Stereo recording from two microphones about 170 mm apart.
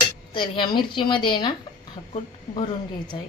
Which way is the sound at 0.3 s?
25° left (ahead or behind).